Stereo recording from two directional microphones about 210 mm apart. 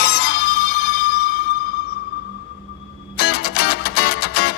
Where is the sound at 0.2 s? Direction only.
50° left (ahead or behind).